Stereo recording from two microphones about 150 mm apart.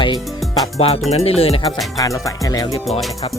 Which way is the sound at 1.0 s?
45° left (ahead or behind).